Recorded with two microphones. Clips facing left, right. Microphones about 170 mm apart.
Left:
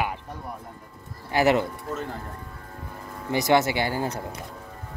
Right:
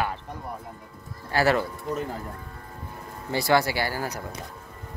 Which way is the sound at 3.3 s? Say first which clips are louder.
Left 2 dB; 20° left (ahead or behind).